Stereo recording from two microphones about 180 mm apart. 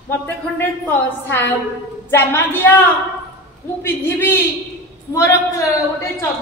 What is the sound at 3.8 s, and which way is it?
Speech, 15° left (ahead or behind).